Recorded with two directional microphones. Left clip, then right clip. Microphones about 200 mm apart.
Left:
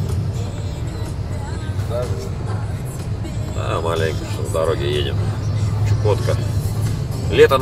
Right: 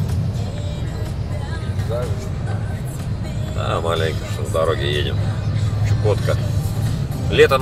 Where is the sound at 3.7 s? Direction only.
10° right (ahead or behind).